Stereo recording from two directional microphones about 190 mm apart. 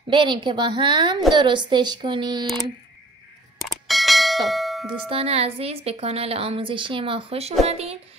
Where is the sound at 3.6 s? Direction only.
Centre (ahead or behind).